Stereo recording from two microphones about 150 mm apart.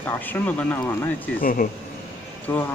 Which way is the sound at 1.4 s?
70° left (ahead or behind).